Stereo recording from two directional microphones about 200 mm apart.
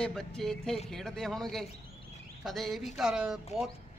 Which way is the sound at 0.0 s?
Centre (ahead or behind).